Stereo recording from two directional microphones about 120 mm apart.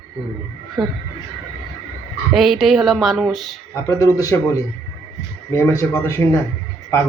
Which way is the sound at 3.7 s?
25° left (ahead or behind).